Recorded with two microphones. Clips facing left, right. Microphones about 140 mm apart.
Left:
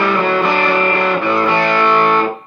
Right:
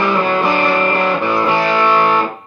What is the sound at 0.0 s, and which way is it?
Music, 20° right (ahead or behind).